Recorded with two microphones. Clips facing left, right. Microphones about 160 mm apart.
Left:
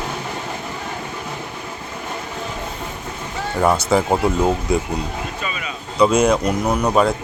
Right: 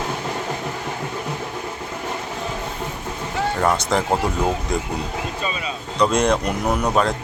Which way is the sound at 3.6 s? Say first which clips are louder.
Left 5 dB; 5° left (ahead or behind).